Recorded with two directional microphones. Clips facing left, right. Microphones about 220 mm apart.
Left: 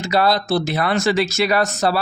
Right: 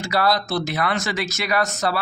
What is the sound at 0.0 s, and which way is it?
A man's voice, 25° left (ahead or behind).